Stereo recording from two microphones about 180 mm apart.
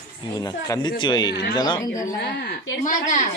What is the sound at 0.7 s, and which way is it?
Speech, 25° left (ahead or behind).